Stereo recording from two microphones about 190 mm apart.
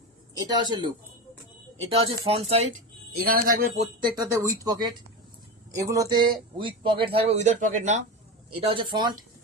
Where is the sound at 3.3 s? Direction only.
50° right (ahead or behind).